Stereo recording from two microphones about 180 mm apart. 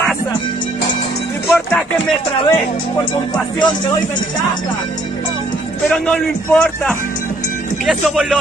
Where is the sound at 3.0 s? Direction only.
25° left (ahead or behind).